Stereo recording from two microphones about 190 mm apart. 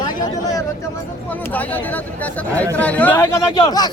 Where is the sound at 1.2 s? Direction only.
10° left (ahead or behind).